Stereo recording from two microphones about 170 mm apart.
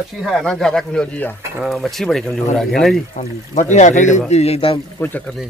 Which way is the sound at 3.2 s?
45° left (ahead or behind).